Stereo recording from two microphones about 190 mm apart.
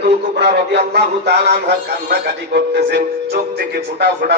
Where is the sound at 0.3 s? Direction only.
60° right (ahead or behind).